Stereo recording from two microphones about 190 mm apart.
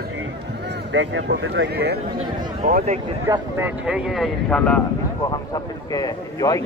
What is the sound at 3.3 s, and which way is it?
Speech, 10° right (ahead or behind).